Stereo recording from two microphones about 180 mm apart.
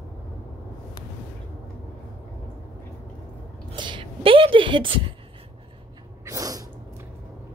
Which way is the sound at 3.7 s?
25° right (ahead or behind).